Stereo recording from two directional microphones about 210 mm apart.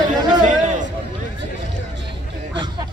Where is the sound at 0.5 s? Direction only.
35° right (ahead or behind).